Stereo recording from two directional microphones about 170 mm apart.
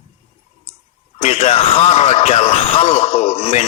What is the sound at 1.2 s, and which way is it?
Speech, 40° left (ahead or behind).